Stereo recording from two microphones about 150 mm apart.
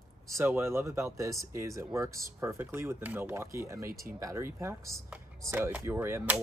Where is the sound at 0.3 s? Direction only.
15° right (ahead or behind).